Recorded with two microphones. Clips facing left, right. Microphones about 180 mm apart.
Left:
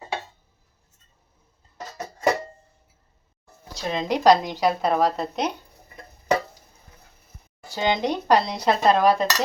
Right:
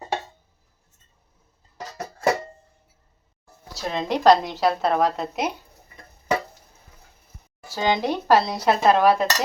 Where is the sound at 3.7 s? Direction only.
Centre (ahead or behind).